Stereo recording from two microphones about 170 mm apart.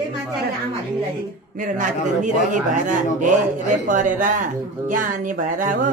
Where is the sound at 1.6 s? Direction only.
50° right (ahead or behind).